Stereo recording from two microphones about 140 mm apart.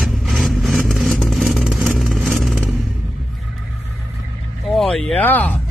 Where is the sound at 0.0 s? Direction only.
Centre (ahead or behind).